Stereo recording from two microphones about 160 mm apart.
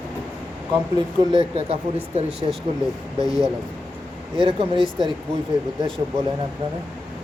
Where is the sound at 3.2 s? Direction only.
25° left (ahead or behind).